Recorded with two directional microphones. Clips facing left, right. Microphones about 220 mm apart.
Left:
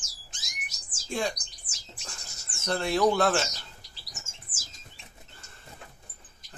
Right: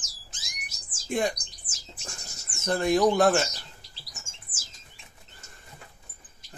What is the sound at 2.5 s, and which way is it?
Speech, 15° right (ahead or behind).